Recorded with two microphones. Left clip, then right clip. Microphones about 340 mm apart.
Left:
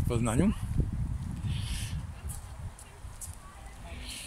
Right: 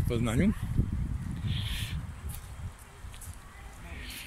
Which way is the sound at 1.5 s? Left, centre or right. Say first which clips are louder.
Right 5 dB; centre.